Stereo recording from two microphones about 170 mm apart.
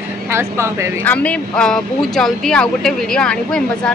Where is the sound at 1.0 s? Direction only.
10° left (ahead or behind).